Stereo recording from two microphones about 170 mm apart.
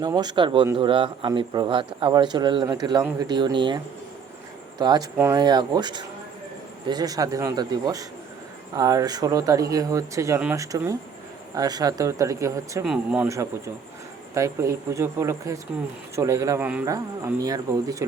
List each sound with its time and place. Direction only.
0.0 s a man's voice: 25° right (ahead or behind)
4.8 s a man's voice: 25° right (ahead or behind)
5.4 s a man's voice: 25° right (ahead or behind)
12.8 s speech: 5° right (ahead or behind)
13.2 s speech: 20° right (ahead or behind)
16.9 s a man's voice: 20° right (ahead or behind)